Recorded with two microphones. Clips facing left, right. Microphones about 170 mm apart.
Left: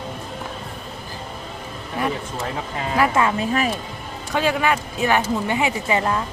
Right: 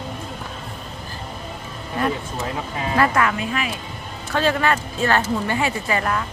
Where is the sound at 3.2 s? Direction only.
25° left (ahead or behind).